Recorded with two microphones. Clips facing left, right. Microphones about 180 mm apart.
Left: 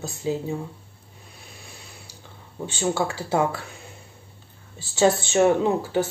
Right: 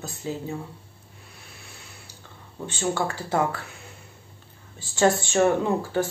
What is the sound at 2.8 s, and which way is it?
Speech, 10° left (ahead or behind).